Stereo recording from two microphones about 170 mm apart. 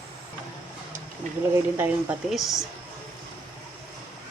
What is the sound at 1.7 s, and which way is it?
Speech, 10° right (ahead or behind).